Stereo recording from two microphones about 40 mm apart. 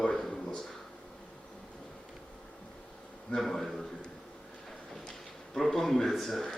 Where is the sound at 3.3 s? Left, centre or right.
Centre.